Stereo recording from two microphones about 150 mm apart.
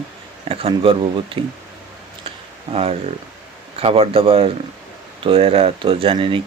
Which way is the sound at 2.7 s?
40° right (ahead or behind).